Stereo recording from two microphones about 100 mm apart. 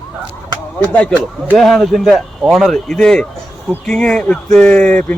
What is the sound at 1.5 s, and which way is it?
A man's voice, 5° left (ahead or behind).